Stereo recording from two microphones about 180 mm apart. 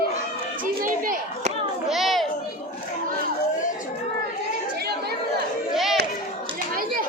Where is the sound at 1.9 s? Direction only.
Centre (ahead or behind).